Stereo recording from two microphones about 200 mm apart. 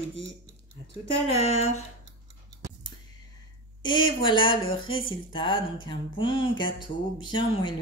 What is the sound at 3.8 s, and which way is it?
Speech, 25° left (ahead or behind).